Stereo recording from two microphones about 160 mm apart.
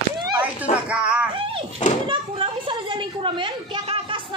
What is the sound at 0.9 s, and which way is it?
Speech, 5° right (ahead or behind).